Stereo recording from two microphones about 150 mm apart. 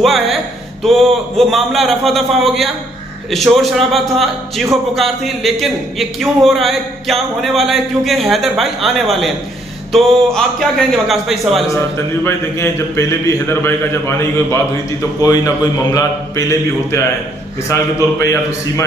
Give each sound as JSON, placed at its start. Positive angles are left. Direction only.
{"t": 0.0, "sound": "a sound", "side_deg": 0}
{"t": 0.8, "sound": "speech", "side_deg": 0}
{"t": 12.2, "sound": "a man's voice", "side_deg": 15}
{"t": 18.2, "sound": "a man's voice", "side_deg": 20}